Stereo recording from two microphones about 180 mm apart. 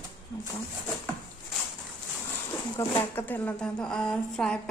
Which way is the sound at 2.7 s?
10° left (ahead or behind).